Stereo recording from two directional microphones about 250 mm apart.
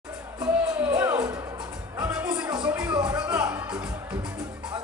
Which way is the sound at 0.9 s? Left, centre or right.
Centre.